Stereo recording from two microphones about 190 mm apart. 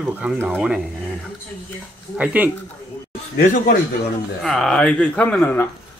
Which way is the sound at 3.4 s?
40° left (ahead or behind).